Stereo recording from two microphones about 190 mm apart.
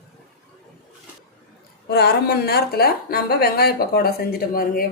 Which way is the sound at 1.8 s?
60° left (ahead or behind).